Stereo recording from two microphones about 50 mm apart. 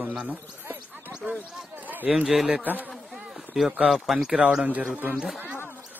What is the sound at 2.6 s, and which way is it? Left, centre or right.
Speech, right.